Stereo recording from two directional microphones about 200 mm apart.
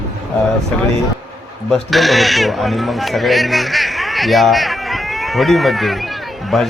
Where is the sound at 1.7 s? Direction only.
Centre (ahead or behind).